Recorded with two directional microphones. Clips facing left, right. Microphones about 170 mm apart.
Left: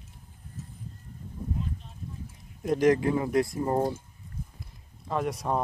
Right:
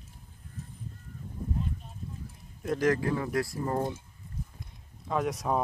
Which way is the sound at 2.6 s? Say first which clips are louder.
Left 4 dB; 20° left (ahead or behind).